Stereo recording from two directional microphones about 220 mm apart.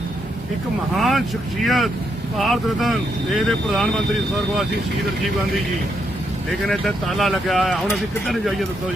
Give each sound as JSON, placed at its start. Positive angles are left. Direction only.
{"t": 0.9, "sound": "speech", "side_deg": 0}
{"t": 6.7, "sound": "speech", "side_deg": 0}